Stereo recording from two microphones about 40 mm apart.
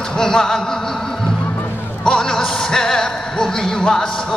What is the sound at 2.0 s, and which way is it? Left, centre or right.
Speech, centre.